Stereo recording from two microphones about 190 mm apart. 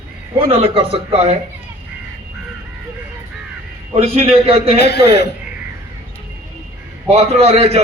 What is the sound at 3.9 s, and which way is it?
Speech, 35° right (ahead or behind).